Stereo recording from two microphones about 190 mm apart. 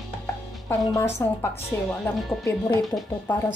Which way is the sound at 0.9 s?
15° left (ahead or behind).